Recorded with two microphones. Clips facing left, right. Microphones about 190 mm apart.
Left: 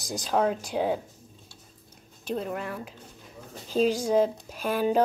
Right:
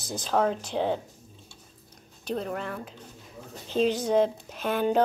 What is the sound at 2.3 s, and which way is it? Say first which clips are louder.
Speech: even; 5° left (ahead or behind).